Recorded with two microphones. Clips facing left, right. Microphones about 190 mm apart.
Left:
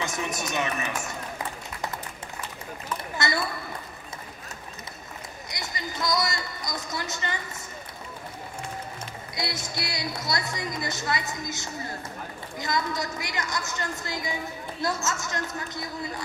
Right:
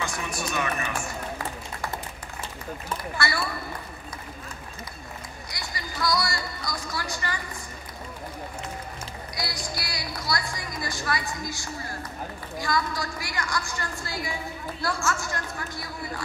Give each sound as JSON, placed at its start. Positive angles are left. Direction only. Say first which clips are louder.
{"t": 0.0, "sound": "a woman's voice", "louder": "left 1 dB", "side_deg": 20}
{"t": 3.2, "sound": "a woman's voice", "louder": "left 1 dB", "side_deg": 20}
{"t": 5.5, "sound": "a woman's voice", "louder": "left 3 dB", "side_deg": 20}
{"t": 9.3, "sound": "a woman's voice", "louder": "left 1 dB", "side_deg": 25}